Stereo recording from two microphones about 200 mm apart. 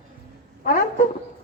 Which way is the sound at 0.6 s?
45° left (ahead or behind).